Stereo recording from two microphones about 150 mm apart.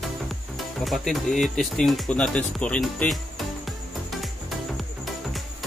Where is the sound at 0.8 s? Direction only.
Centre (ahead or behind).